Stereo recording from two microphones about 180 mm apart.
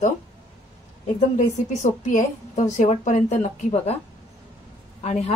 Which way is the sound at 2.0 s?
45° left (ahead or behind).